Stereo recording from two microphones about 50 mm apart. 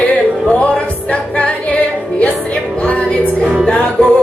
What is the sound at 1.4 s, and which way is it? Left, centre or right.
Music, left.